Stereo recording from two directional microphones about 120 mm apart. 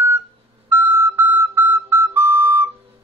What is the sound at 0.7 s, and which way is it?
Flute, 20° right (ahead or behind).